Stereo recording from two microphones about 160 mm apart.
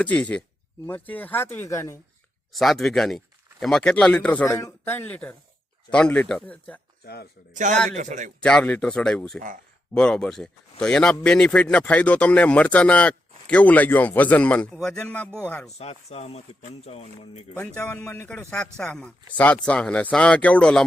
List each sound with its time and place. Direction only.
0.0 s a man's voice: 10° left (ahead or behind)
2.5 s a man's voice: centre (ahead or behind)
7.0 s speech: 85° left
7.5 s a man's voice: 50° right (ahead or behind)
8.4 s a man's voice: 5° left (ahead or behind)
15.8 s speech: 40° left (ahead or behind)
17.7 s a man's voice: 15° left (ahead or behind)